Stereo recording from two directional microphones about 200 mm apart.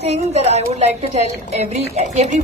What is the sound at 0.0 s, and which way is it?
A woman's voice, 30° right (ahead or behind).